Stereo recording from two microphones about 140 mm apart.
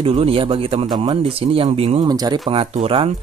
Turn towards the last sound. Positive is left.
turn(degrees=-40)  # may be behind; listen again after turning